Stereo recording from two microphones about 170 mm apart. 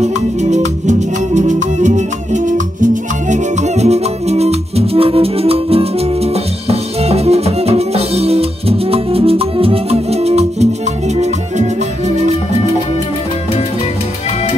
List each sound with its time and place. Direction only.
0.0 s music: 45° right (ahead or behind)